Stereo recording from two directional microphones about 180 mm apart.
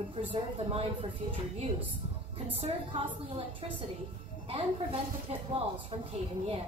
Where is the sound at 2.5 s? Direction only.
30° right (ahead or behind).